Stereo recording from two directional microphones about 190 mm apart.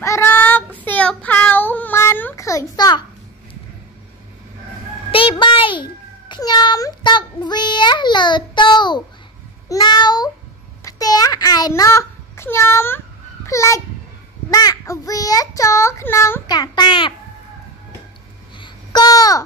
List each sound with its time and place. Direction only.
0.0 s child singing: 15° left (ahead or behind)
5.1 s a sound: 25° left (ahead or behind)
9.7 s meow: 20° left (ahead or behind)
10.8 s babbling: 20° left (ahead or behind)
14.5 s child singing: 20° left (ahead or behind)
18.6 s babbling: 20° left (ahead or behind)